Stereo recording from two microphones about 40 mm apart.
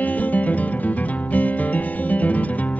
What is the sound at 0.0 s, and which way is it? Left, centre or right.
Music, left.